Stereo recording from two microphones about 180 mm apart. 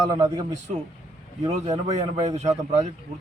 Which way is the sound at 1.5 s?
35° right (ahead or behind).